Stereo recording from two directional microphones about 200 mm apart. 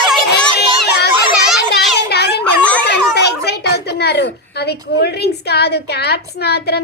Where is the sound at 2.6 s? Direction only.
5° left (ahead or behind).